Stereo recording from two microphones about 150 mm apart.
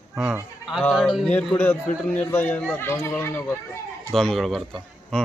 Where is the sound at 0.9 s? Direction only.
Centre (ahead or behind).